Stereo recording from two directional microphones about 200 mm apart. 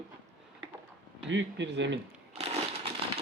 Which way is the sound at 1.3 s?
65° right (ahead or behind).